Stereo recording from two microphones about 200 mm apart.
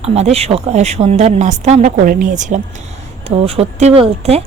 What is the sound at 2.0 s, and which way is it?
A woman's voice, 45° right (ahead or behind).